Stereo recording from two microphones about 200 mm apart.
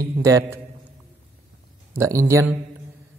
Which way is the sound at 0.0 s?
15° right (ahead or behind).